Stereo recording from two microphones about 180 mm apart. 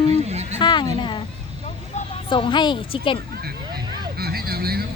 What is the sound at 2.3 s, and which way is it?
Speech, 25° left (ahead or behind).